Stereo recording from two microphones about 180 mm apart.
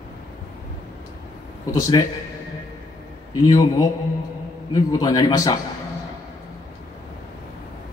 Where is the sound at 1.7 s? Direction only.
20° left (ahead or behind).